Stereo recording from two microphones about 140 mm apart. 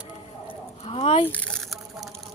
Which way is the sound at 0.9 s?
40° left (ahead or behind).